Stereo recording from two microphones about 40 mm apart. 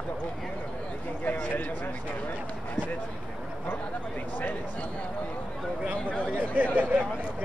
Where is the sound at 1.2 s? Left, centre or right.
Left.